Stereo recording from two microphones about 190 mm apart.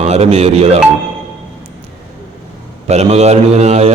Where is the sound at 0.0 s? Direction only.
35° right (ahead or behind).